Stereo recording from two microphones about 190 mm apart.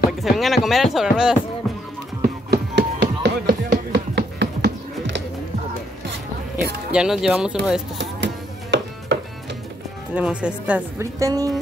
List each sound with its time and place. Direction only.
0.2 s speech: centre (ahead or behind)
2.2 s chop: 60° right (ahead or behind)
6.9 s speech: 5° right (ahead or behind)
8.0 s music: 70° right (ahead or behind)
10.1 s speech: 5° right (ahead or behind)